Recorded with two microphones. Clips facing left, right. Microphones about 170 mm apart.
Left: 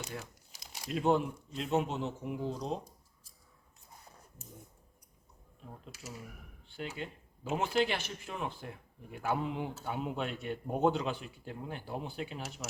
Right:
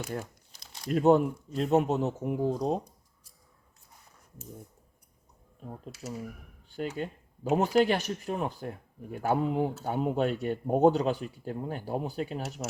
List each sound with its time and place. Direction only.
0.5 s crumpling: 10° left (ahead or behind)
0.9 s speech: 45° right (ahead or behind)
5.8 s speech: 45° right (ahead or behind)